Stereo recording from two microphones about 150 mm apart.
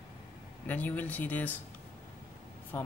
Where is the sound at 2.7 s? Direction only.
15° left (ahead or behind).